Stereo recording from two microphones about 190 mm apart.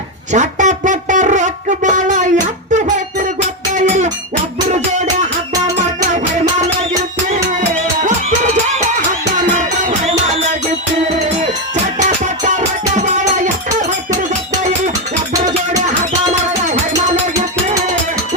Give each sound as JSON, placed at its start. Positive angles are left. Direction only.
{"t": 0.3, "sound": "a sound", "side_deg": -40}
{"t": 3.8, "sound": "cowbell", "side_deg": -35}
{"t": 12.5, "sound": "music", "side_deg": -40}